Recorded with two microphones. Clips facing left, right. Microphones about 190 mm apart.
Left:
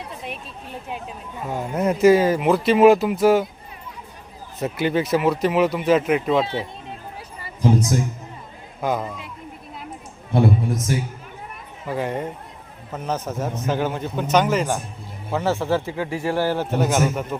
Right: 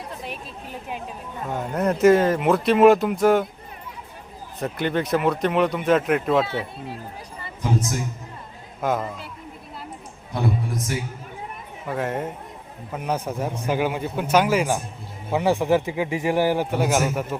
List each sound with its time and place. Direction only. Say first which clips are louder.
1.5 s speech: left 1 dB; centre (ahead or behind)
4.6 s speech: left 2 dB; 5° left (ahead or behind)
8.8 s speech: even; centre (ahead or behind)
10.3 s a man's voice: left 6 dB; 25° left (ahead or behind)
11.9 s speech: left 1 dB; centre (ahead or behind)
12.9 s a man's voice: even; 10° right (ahead or behind)